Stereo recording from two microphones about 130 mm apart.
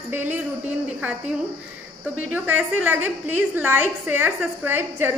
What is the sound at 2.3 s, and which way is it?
A woman's voice, 15° right (ahead or behind).